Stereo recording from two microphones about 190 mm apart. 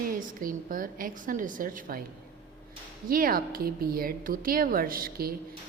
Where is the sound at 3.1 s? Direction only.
50° right (ahead or behind).